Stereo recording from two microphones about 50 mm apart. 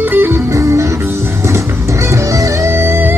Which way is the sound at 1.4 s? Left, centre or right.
Right.